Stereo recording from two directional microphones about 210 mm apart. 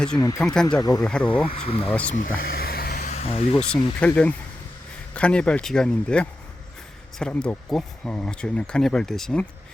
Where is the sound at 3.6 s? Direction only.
5° left (ahead or behind).